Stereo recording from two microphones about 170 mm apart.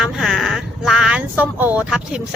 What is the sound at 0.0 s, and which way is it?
Speech, centre (ahead or behind).